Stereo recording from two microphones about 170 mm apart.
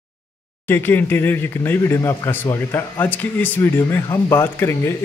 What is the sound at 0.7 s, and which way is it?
Speech, 10° left (ahead or behind).